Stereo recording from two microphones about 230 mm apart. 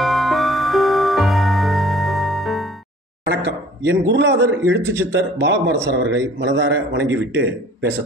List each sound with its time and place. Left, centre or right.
0.0 s music: centre
3.3 s a man's voice: right
4.7 s speech: centre
5.4 s a man's voice: right